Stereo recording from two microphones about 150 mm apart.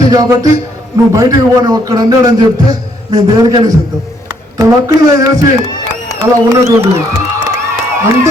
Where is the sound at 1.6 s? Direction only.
25° right (ahead or behind).